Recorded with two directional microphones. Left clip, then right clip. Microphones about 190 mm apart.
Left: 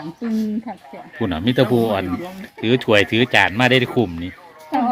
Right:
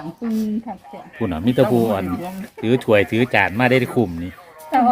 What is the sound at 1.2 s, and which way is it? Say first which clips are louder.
Speech: right 1 dB; centre (ahead or behind).